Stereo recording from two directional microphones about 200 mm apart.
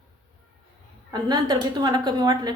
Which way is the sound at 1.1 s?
20° right (ahead or behind).